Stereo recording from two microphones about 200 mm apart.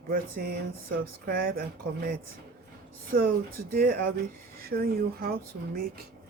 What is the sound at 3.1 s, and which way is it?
Speech, 50° right (ahead or behind).